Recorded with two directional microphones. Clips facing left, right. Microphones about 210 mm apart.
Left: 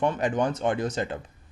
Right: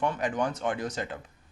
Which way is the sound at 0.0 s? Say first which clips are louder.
Left 4 dB; 25° left (ahead or behind).